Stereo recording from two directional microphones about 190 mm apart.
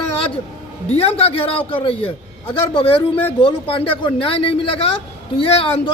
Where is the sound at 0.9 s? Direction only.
30° left (ahead or behind).